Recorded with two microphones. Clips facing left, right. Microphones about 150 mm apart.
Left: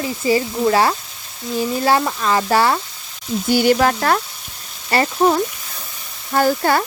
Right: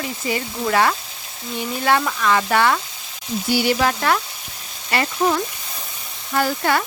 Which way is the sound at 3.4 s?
50° left (ahead or behind).